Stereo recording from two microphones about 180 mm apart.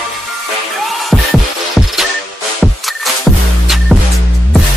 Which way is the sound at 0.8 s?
Centre (ahead or behind).